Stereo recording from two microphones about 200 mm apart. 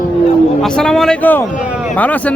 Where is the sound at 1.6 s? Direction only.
5° right (ahead or behind).